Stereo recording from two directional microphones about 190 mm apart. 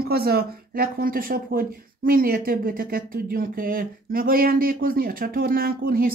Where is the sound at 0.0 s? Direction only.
55° right (ahead or behind).